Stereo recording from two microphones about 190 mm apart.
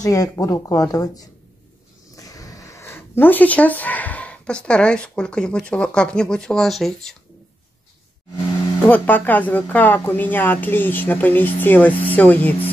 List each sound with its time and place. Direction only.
0.0 s speech: 20° left (ahead or behind); by 7.2 s centre (ahead or behind)
8.8 s speech: 10° left (ahead or behind)